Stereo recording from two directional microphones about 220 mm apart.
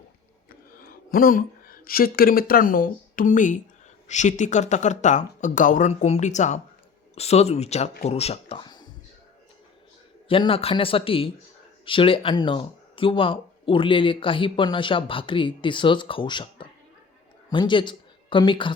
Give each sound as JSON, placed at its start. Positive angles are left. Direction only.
{"t": 0.8, "sound": "speech", "side_deg": 40}
{"t": 10.2, "sound": "speech", "side_deg": 25}